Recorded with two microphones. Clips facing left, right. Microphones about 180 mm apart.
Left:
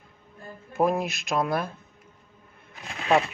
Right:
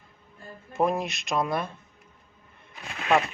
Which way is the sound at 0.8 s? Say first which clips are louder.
Left 1 dB; centre (ahead or behind).